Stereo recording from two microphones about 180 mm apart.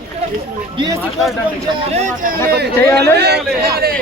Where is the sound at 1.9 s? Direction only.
40° right (ahead or behind).